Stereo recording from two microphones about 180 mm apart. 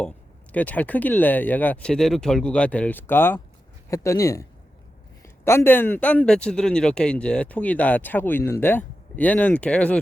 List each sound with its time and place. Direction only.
0.5 s a man's voice: 10° left (ahead or behind)